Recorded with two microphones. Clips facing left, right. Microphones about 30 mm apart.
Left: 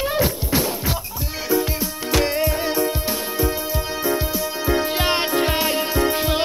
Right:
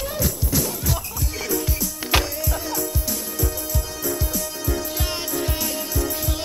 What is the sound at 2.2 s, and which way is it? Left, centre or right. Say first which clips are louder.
Music: left 7 dB; left.